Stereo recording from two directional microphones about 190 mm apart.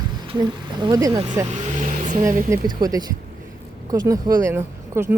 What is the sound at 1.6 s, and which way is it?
Vehicle, 40° right (ahead or behind).